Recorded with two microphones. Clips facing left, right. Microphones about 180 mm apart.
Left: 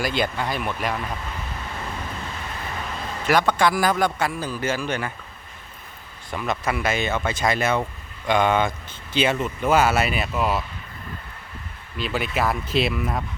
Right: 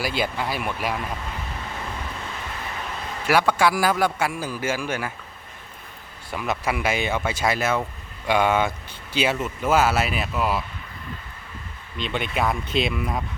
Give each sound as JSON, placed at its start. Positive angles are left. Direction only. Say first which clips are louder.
{"t": 0.0, "sound": "a man's voice", "louder": "left 1 dB", "side_deg": -5}
{"t": 3.2, "sound": "a man's voice", "louder": "even", "side_deg": -5}
{"t": 6.3, "sound": "a man's voice", "louder": "even", "side_deg": -5}
{"t": 11.9, "sound": "speech", "louder": "left 1 dB", "side_deg": 5}